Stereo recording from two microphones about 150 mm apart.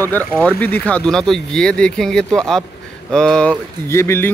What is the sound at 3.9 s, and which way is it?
Speech, 15° left (ahead or behind).